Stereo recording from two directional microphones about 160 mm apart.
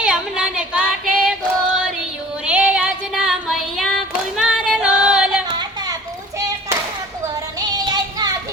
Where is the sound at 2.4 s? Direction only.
5° right (ahead or behind).